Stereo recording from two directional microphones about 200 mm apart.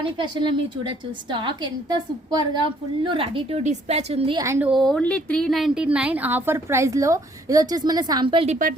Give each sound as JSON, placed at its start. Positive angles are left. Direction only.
{"t": 0.0, "sound": "a woman's voice", "side_deg": -25}
{"t": 4.4, "sound": "a woman's voice", "side_deg": -15}
{"t": 4.7, "sound": "a woman's voice", "side_deg": 0}